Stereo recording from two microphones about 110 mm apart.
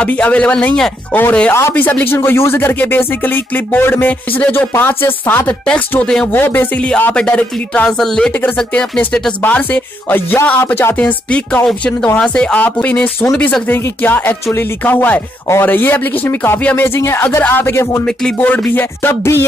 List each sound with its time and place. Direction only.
0.0 s music: 10° left (ahead or behind)
1.5 s speech: 20° left (ahead or behind)
6.4 s music: 15° left (ahead or behind)
13.7 s speech: 20° left (ahead or behind)
18.0 s music: 10° left (ahead or behind)